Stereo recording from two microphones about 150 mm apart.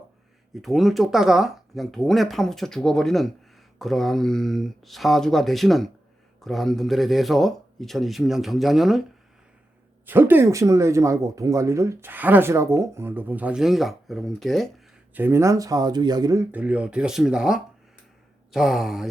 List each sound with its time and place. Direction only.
0.5 s speech: centre (ahead or behind)
10.1 s speech: 15° right (ahead or behind); by 14.7 s centre (ahead or behind)
15.1 s speech: 15° right (ahead or behind)
16.5 s speech: 10° right (ahead or behind)